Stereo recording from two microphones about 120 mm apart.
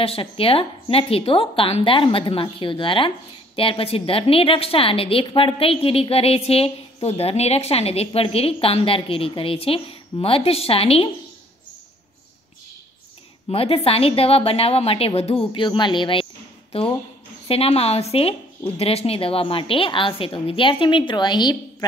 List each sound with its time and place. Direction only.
0.0 s a woman's voice: 50° left (ahead or behind)
13.5 s a woman's voice: 55° left (ahead or behind)
15.5 s speech: 40° left (ahead or behind)
17.5 s a woman's voice: 55° left (ahead or behind); by 21.8 s 35° left (ahead or behind)